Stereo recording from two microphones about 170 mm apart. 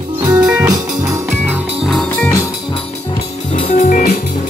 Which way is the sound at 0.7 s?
20° right (ahead or behind).